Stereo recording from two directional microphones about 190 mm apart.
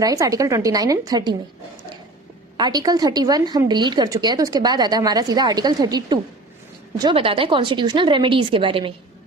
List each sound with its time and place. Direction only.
0.0 s a woman's voice: 20° right (ahead or behind)
2.6 s a woman's voice: 20° right (ahead or behind)